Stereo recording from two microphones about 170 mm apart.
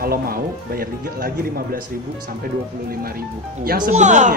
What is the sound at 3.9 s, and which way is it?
Speech, 45° right (ahead or behind).